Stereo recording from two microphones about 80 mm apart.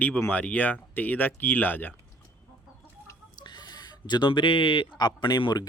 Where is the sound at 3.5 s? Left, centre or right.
Left.